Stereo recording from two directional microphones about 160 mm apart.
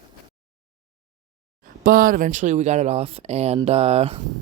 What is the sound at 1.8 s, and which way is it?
Speech, 60° right (ahead or behind).